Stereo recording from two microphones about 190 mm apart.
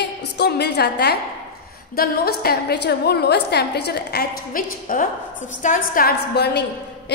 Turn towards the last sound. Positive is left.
turn(degrees=55)  # may be behind; listen again after turning